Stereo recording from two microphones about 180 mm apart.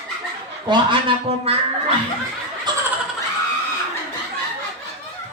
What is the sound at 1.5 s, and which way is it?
Speech, 35° right (ahead or behind).